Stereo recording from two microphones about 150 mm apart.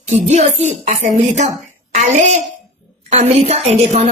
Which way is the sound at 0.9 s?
50° right (ahead or behind).